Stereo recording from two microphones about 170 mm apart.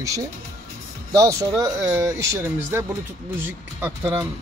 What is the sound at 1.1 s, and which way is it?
Speech, 20° right (ahead or behind).